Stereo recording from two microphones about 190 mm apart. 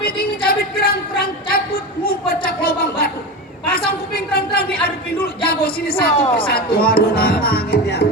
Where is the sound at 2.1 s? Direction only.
50° left (ahead or behind).